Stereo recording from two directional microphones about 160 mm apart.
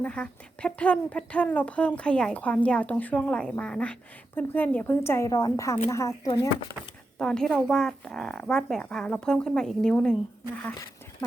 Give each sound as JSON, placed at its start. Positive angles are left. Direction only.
{"t": 0.0, "sound": "speech", "side_deg": 5}
{"t": 7.2, "sound": "speech", "side_deg": 5}